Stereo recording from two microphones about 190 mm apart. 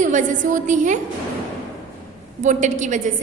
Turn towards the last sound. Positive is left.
turn(degrees=-40)  # may be behind; listen again after turning